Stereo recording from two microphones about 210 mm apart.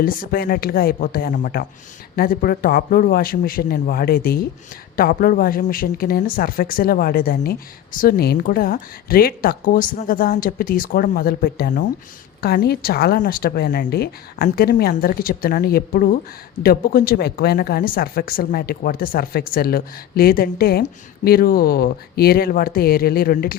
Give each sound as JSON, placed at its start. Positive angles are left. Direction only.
{"t": 0.0, "sound": "speech", "side_deg": 40}